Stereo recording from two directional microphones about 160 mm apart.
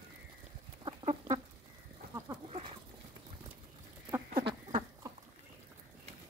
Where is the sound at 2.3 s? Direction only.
35° right (ahead or behind).